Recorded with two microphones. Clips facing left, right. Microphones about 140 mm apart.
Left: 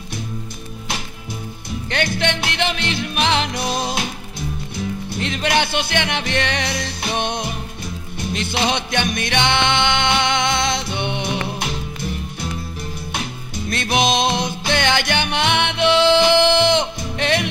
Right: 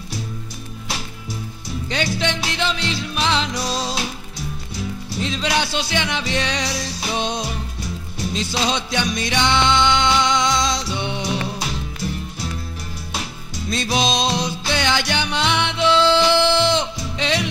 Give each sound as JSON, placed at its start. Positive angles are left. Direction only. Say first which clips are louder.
{"t": 1.9, "sound": "music", "louder": "left 1 dB", "side_deg": 60}
{"t": 5.1, "sound": "music", "louder": "left 1 dB", "side_deg": 55}
{"t": 13.7, "sound": "music", "louder": "left 2 dB", "side_deg": 60}